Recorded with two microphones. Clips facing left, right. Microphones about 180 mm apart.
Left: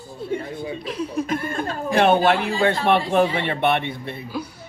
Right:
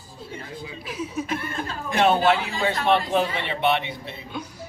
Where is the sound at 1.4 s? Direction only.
50° left (ahead or behind).